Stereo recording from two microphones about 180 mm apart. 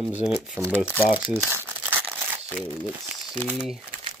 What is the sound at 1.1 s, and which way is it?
Crumpling, 10° right (ahead or behind).